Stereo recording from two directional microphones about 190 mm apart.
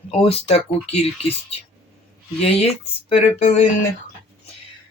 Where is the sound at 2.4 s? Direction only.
30° left (ahead or behind).